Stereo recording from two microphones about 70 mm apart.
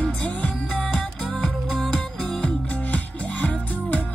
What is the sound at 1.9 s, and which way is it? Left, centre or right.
Music, centre.